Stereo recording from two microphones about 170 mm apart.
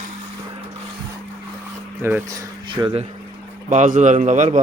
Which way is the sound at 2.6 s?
30° right (ahead or behind).